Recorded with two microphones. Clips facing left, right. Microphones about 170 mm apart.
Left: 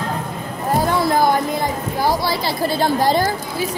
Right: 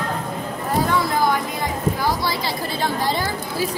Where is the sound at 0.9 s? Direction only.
35° left (ahead or behind).